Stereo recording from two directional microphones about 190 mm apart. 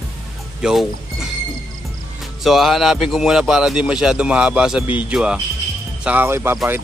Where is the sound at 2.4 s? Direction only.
Centre (ahead or behind).